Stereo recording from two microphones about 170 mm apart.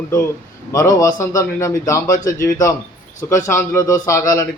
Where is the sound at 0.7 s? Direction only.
20° left (ahead or behind).